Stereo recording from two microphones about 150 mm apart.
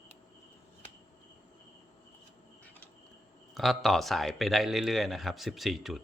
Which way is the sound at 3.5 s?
Centre (ahead or behind).